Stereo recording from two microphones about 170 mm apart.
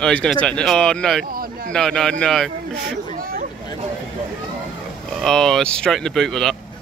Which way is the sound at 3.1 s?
55° right (ahead or behind).